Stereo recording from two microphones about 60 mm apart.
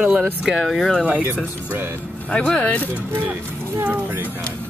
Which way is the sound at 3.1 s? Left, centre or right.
Right.